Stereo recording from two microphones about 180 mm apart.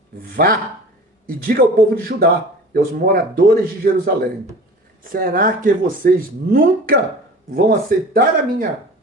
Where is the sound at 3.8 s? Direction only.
55° right (ahead or behind).